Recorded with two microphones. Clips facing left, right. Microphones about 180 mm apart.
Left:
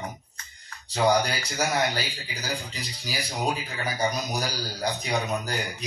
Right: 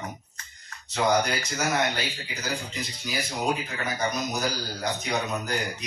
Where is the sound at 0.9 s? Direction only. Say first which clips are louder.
Left 1 dB; 35° left (ahead or behind).